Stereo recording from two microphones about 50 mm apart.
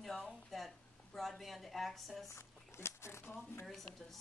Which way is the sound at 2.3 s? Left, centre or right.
Left.